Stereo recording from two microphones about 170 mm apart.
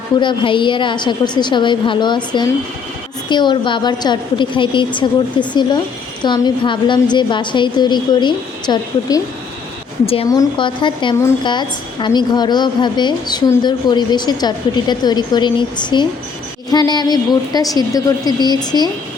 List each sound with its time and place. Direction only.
0.2 s a woman's voice: 30° left (ahead or behind)
10.2 s a woman's voice: 25° left (ahead or behind)